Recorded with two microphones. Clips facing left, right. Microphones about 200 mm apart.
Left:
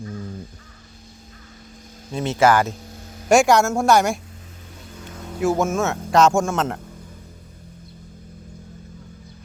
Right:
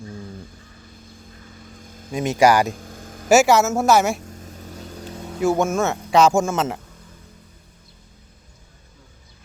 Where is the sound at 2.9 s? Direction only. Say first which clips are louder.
Right 2 dB; 50° right (ahead or behind).